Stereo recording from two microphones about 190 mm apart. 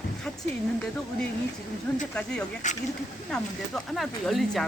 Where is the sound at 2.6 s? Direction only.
40° left (ahead or behind).